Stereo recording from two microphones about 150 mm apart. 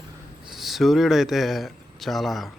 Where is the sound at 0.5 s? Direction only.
Centre (ahead or behind).